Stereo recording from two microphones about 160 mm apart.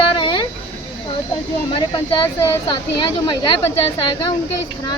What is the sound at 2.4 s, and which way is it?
Speech, 20° left (ahead or behind).